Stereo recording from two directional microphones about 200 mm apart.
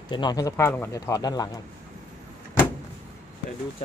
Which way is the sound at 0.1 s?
20° left (ahead or behind).